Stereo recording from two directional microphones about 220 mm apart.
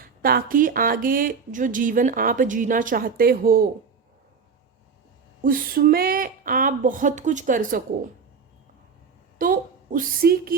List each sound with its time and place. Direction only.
0.0 s speech: 40° right (ahead or behind)
5.4 s speech: 40° right (ahead or behind)
9.4 s a woman's voice: 40° right (ahead or behind)